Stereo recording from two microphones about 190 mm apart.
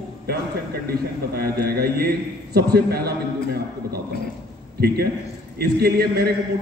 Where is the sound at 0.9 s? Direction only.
55° right (ahead or behind).